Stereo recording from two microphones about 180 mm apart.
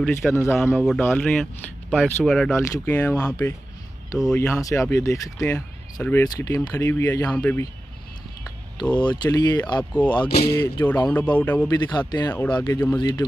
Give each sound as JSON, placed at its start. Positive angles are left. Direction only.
{"t": 0.0, "sound": "speech", "side_deg": 5}
{"t": 8.8, "sound": "speech", "side_deg": 10}
{"t": 9.1, "sound": "speech", "side_deg": 25}
{"t": 9.8, "sound": "speech", "side_deg": 10}
{"t": 11.6, "sound": "speech", "side_deg": 20}
{"t": 12.3, "sound": "speech", "side_deg": 10}